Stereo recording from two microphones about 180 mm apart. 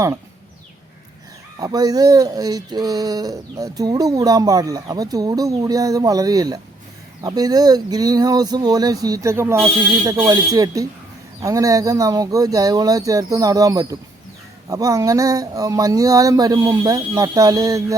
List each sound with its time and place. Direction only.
1.5 s speech: 20° right (ahead or behind)